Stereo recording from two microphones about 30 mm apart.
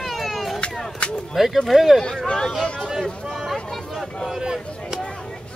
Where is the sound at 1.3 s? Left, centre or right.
Centre.